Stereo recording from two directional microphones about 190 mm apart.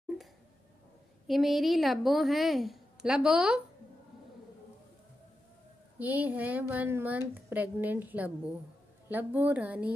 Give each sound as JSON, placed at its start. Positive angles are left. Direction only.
{"t": 1.2, "sound": "a woman's voice", "side_deg": 0}
{"t": 5.9, "sound": "a woman's voice", "side_deg": -10}